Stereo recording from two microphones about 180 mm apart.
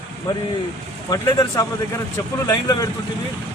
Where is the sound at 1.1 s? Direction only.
20° left (ahead or behind).